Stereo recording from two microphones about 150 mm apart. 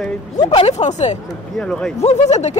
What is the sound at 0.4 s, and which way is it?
Speech, 30° left (ahead or behind).